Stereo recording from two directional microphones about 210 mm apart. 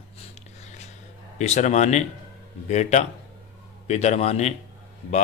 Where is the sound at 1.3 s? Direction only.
35° left (ahead or behind).